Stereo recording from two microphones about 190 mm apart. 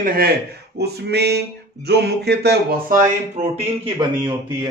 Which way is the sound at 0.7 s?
60° right (ahead or behind).